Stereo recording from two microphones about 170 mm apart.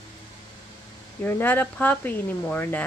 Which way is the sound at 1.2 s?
10° left (ahead or behind).